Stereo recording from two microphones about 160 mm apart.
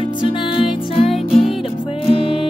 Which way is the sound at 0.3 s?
35° left (ahead or behind).